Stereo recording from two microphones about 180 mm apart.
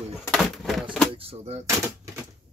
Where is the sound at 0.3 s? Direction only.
Centre (ahead or behind).